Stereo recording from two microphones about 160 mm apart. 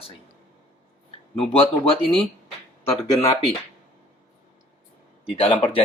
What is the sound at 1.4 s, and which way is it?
Speech, 35° left (ahead or behind).